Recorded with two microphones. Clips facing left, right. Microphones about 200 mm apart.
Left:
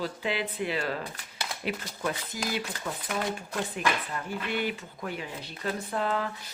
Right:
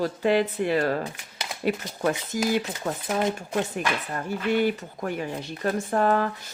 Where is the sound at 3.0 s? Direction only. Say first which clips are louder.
Right 6 dB; 20° right (ahead or behind).